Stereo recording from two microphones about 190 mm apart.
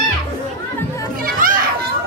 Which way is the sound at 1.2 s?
45° right (ahead or behind).